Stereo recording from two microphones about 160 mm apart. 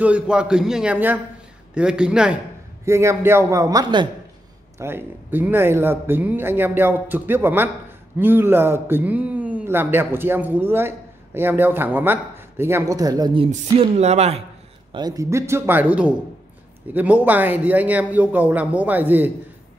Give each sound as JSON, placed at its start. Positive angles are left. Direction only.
{"t": 0.0, "sound": "a man's voice", "side_deg": -5}
{"t": 2.8, "sound": "speech", "side_deg": -15}
{"t": 4.7, "sound": "speech", "side_deg": -15}
{"t": 13.5, "sound": "speech", "side_deg": -45}
{"t": 14.9, "sound": "speech", "side_deg": -25}